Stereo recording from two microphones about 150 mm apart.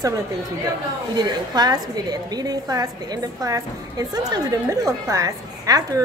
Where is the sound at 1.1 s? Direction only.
30° right (ahead or behind).